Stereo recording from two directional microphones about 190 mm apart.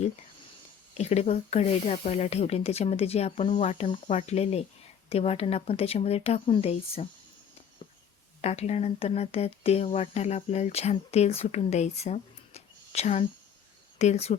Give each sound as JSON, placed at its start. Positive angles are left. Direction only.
{"t": 0.9, "sound": "speech", "side_deg": 35}
{"t": 8.4, "sound": "speech", "side_deg": 35}